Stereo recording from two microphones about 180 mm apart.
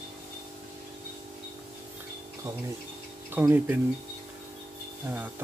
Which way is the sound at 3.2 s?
10° right (ahead or behind).